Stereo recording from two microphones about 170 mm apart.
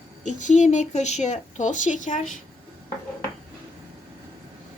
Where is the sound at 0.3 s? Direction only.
45° left (ahead or behind).